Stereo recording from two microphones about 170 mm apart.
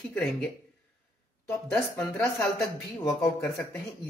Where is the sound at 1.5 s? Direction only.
10° left (ahead or behind).